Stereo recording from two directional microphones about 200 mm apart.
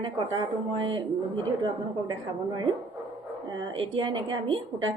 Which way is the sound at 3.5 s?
25° right (ahead or behind).